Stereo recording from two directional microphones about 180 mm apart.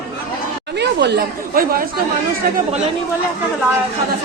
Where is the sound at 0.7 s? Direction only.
70° right (ahead or behind); by 2.0 s 55° right (ahead or behind).